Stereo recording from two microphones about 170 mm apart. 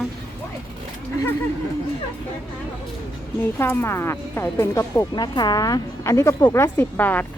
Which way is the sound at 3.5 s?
15° left (ahead or behind).